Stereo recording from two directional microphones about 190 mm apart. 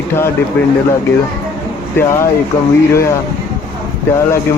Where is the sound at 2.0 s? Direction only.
10° left (ahead or behind).